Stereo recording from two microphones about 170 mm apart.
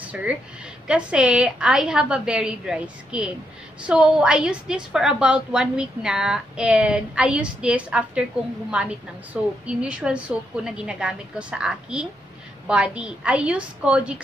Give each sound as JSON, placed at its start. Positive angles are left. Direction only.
{"t": 0.1, "sound": "a woman's voice", "side_deg": -5}